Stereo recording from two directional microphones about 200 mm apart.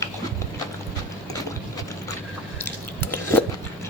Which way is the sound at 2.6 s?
10° left (ahead or behind).